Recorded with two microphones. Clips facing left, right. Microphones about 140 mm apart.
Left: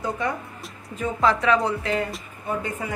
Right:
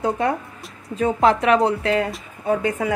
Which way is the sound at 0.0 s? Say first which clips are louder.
Right 6 dB; 65° right (ahead or behind).